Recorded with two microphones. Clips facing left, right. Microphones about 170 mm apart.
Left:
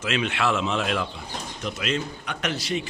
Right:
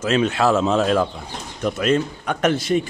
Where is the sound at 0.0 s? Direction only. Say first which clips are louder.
Right 7 dB; 40° right (ahead or behind).